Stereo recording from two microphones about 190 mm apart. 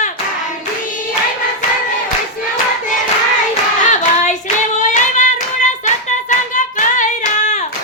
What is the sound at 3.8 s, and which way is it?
Hands, 40° left (ahead or behind).